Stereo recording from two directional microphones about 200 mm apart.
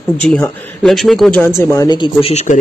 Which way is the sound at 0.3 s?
5° left (ahead or behind).